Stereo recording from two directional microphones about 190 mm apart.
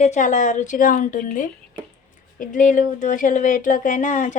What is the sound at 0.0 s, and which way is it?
A woman's voice, 40° left (ahead or behind).